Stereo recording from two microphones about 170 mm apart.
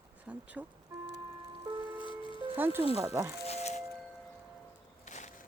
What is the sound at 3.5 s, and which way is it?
Music, 40° left (ahead or behind).